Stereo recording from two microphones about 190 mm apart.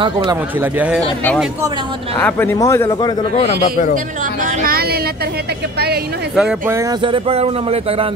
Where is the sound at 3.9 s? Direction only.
45° right (ahead or behind).